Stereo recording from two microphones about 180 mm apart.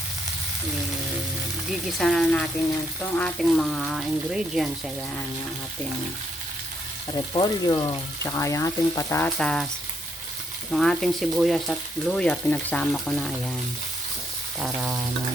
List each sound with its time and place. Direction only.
1.7 s frying: centre (ahead or behind)
7.1 s speech: 20° left (ahead or behind); by 9.6 s 5° left (ahead or behind)
10.7 s frying: centre (ahead or behind)
14.6 s a sound: 5° right (ahead or behind)